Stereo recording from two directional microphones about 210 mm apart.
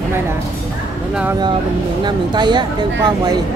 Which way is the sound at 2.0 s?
20° right (ahead or behind).